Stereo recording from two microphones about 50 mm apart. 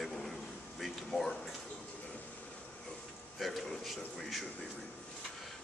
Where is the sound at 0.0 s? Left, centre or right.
Centre.